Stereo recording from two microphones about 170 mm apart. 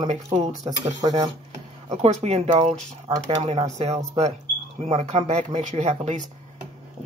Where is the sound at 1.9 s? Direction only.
40° right (ahead or behind).